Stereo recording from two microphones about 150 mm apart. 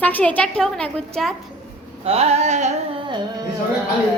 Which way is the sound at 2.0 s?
45° right (ahead or behind).